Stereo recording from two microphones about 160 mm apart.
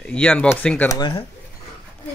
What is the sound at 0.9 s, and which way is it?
Speech, 30° left (ahead or behind).